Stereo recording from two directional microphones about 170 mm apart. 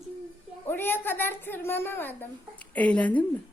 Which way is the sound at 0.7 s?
10° left (ahead or behind).